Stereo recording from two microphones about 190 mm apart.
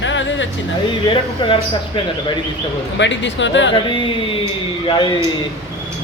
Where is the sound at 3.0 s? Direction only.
75° left (ahead or behind).